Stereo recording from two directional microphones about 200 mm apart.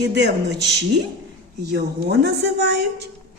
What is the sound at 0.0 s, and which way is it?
Speech, 60° right (ahead or behind).